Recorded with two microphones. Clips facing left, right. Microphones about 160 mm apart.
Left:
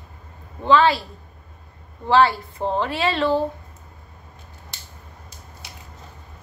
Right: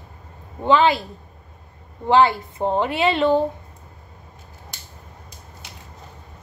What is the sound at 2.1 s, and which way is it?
A woman's voice, 20° right (ahead or behind).